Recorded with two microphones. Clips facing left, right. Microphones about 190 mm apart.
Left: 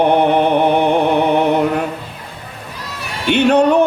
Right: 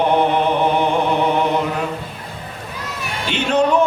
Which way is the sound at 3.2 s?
60° left (ahead or behind).